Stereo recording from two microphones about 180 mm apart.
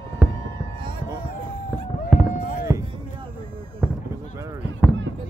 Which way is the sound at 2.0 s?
5° right (ahead or behind).